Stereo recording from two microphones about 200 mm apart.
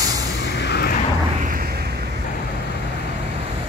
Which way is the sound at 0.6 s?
55° left (ahead or behind).